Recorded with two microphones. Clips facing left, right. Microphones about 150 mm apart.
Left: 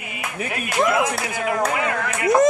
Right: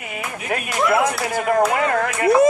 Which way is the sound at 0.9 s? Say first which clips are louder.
Right 3 dB; 45° right (ahead or behind).